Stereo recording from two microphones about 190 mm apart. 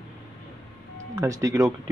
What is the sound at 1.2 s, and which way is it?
Speech, 15° right (ahead or behind).